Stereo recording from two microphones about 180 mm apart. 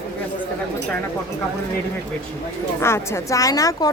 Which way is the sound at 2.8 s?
15° left (ahead or behind).